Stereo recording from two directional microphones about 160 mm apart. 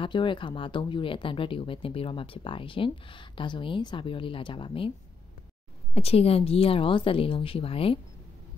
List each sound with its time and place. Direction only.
0.0 s speech: 30° left (ahead or behind)
5.9 s speech: 40° left (ahead or behind)